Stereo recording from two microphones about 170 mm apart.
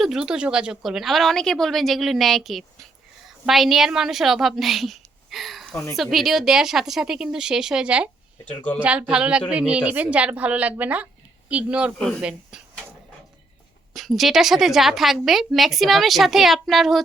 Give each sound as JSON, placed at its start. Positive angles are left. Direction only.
{"t": 0.0, "sound": "a woman's voice", "side_deg": -5}
{"t": 5.7, "sound": "speech", "side_deg": 15}
{"t": 6.0, "sound": "a woman's voice", "side_deg": 0}
{"t": 11.9, "sound": "a woman's voice", "side_deg": 5}
{"t": 13.9, "sound": "a woman's voice", "side_deg": 0}